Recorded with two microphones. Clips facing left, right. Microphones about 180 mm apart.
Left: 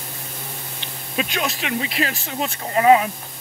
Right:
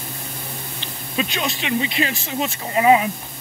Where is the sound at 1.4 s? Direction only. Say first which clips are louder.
Right 3 dB; 5° left (ahead or behind).